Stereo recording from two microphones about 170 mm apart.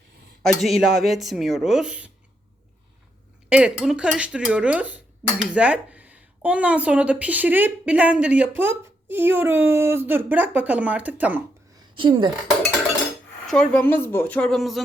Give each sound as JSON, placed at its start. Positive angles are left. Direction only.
{"t": 0.4, "sound": "speech", "side_deg": 0}
{"t": 3.5, "sound": "speech", "side_deg": -5}
{"t": 11.8, "sound": "a woman's voice", "side_deg": -30}
{"t": 13.5, "sound": "speech", "side_deg": 5}